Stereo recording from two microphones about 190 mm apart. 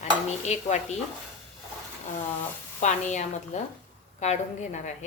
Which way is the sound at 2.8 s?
40° left (ahead or behind).